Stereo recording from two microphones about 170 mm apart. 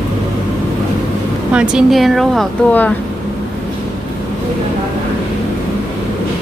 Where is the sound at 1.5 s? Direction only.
Centre (ahead or behind).